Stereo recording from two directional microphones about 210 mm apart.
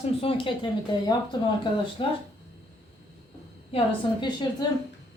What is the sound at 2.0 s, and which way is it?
Speech, 25° left (ahead or behind).